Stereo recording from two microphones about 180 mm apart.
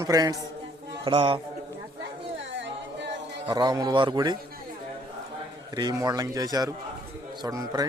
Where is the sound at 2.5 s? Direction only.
75° right (ahead or behind).